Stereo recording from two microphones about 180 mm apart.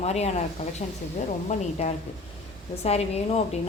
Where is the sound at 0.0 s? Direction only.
35° left (ahead or behind).